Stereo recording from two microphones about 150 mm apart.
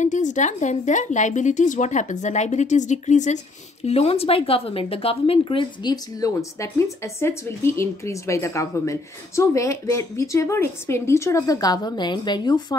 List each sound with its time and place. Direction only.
0.0 s a woman's voice: 55° left (ahead or behind); by 5.9 s 35° left (ahead or behind)
6.2 s speech: 20° left (ahead or behind)